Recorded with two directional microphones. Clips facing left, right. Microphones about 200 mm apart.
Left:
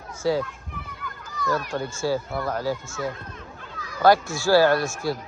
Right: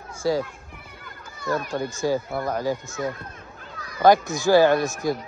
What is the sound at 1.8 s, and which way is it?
Speech, 15° right (ahead or behind).